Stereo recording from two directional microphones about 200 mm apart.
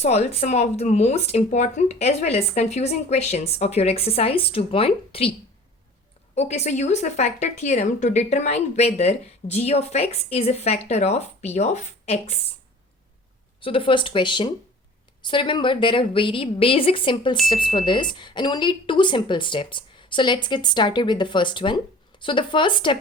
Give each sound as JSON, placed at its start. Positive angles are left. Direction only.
{"t": 0.0, "sound": "speech", "side_deg": 35}
{"t": 6.3, "sound": "speech", "side_deg": 35}
{"t": 13.6, "sound": "a woman's voice", "side_deg": 25}